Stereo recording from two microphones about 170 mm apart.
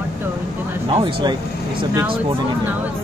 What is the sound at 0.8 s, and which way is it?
Speech, 30° right (ahead or behind).